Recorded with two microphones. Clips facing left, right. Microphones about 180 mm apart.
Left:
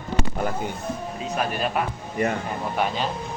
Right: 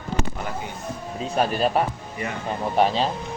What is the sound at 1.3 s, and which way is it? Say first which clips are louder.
Speech: right 4 dB; 30° right (ahead or behind).